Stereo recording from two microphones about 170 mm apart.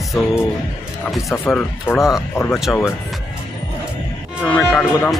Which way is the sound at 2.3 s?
15° left (ahead or behind).